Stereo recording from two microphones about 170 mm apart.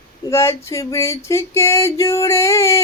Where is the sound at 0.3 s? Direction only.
15° left (ahead or behind).